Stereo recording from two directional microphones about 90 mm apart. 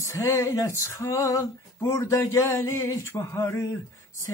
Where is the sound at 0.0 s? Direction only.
35° left (ahead or behind).